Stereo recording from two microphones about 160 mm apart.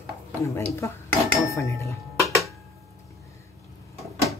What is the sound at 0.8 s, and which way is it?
Speech, 20° left (ahead or behind).